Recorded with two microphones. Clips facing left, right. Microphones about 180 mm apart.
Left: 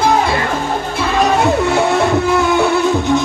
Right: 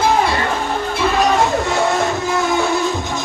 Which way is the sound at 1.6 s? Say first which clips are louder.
Left 4 dB; 60° left (ahead or behind).